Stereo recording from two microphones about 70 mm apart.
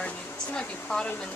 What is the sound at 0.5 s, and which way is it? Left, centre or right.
Speech, centre.